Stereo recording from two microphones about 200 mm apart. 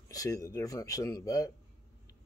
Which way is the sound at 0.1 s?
15° left (ahead or behind).